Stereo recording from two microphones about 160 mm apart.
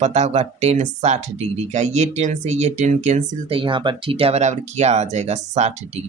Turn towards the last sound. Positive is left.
turn(degrees=-45)  # may be behind; listen again after turning